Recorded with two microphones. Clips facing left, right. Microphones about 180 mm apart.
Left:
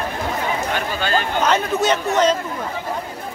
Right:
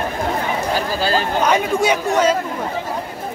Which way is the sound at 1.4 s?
10° right (ahead or behind).